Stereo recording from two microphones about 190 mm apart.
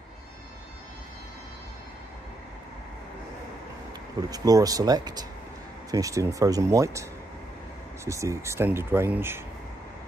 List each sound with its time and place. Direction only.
4.3 s speech: 20° right (ahead or behind)